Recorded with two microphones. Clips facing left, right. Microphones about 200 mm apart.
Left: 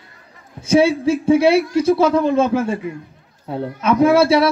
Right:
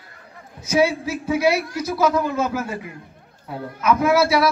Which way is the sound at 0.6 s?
30° left (ahead or behind).